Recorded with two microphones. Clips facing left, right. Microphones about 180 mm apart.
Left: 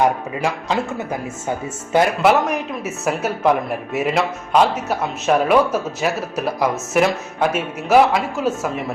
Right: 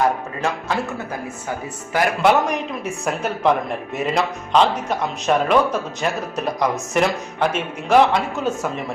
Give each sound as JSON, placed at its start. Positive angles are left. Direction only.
{"t": 0.4, "sound": "a man's voice", "side_deg": 15}
{"t": 2.2, "sound": "speech", "side_deg": 0}